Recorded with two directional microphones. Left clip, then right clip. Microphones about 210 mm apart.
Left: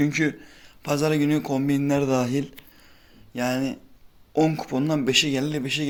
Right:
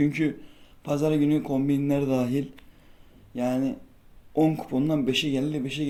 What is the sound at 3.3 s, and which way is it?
Speech, 15° left (ahead or behind).